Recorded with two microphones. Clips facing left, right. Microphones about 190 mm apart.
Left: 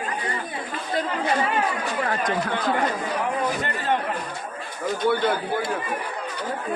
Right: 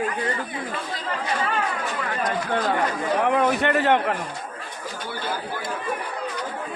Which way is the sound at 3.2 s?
70° right (ahead or behind).